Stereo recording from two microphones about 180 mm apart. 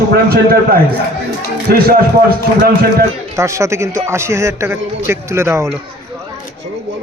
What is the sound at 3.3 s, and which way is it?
A man's voice, 15° right (ahead or behind).